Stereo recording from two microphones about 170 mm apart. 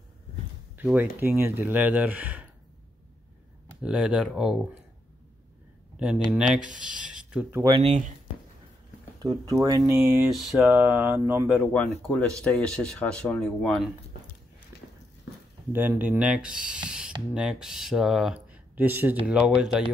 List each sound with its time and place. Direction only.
0.7 s speech: 10° right (ahead or behind)
3.8 s speech: 5° right (ahead or behind)
5.9 s speech: 5° right (ahead or behind)
7.8 s speech: 45° right (ahead or behind)
9.2 s speech: 20° right (ahead or behind)
9.9 s speech: centre (ahead or behind)
15.7 s speech: 10° right (ahead or behind)